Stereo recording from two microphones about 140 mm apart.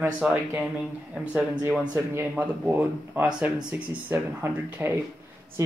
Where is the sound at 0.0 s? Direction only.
15° right (ahead or behind).